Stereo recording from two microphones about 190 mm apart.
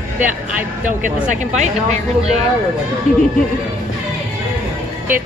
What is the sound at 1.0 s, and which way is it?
Speech, 40° right (ahead or behind).